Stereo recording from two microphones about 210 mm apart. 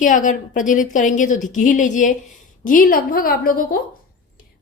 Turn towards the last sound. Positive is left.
turn(degrees=45)  # may be behind; listen again after turning